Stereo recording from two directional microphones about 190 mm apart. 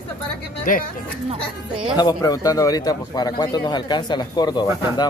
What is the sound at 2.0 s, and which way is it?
A man's voice, 20° left (ahead or behind).